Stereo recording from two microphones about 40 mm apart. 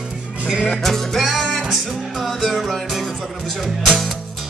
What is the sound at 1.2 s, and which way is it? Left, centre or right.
Music, centre.